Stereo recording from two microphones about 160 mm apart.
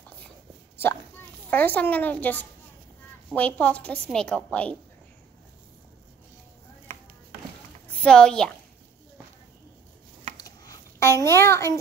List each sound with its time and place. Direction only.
1.5 s a woman's voice: 10° left (ahead or behind)
7.9 s a woman's voice: 5° left (ahead or behind)
10.3 s a sound: 20° left (ahead or behind)